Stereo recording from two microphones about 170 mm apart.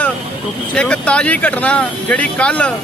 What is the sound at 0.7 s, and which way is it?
A man's voice, 5° left (ahead or behind).